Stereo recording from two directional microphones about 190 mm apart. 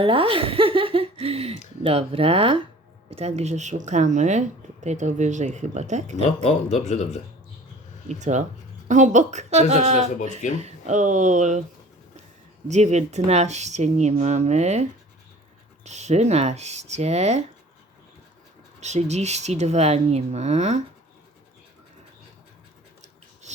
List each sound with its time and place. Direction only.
0.0 s speech: 30° right (ahead or behind)
6.4 s speech: 40° left (ahead or behind)
8.0 s speech: 40° right (ahead or behind)
10.2 s speech: 40° left (ahead or behind)
10.6 s speech: 35° right (ahead or behind)
12.6 s speech: 35° right (ahead or behind)
18.8 s speech: 35° right (ahead or behind)